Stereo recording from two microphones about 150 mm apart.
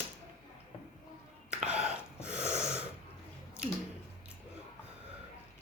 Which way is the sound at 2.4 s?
15° left (ahead or behind).